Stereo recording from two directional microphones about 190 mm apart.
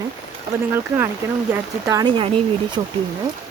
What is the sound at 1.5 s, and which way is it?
Speech, 15° right (ahead or behind).